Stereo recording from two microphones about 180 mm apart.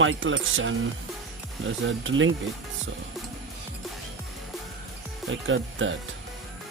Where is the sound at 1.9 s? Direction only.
90° right.